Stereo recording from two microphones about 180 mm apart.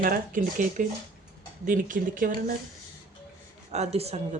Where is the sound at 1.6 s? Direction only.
50° right (ahead or behind).